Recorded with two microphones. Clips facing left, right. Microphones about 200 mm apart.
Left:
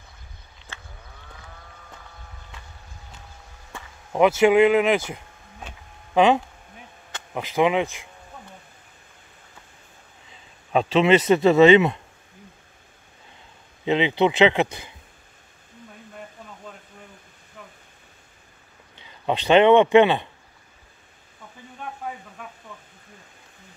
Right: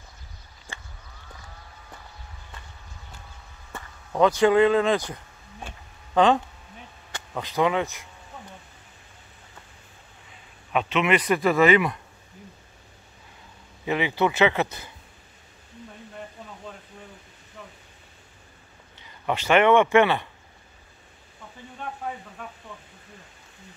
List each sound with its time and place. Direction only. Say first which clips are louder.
0.7 s a sound: right 1 dB; 15° right (ahead or behind)
4.1 s speech: left 2 dB; 10° left (ahead or behind)
10.7 s a man's voice: left 5 dB; 30° left (ahead or behind)
13.8 s speech: left 4 dB; 20° left (ahead or behind)
18.9 s speech: left 3 dB; 20° left (ahead or behind)